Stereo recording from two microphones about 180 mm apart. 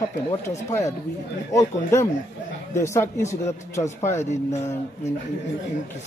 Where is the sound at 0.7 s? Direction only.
15° left (ahead or behind).